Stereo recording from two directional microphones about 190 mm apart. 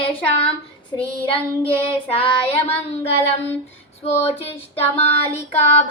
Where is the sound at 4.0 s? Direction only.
35° left (ahead or behind).